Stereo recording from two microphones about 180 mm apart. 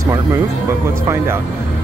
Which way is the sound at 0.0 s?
20° right (ahead or behind).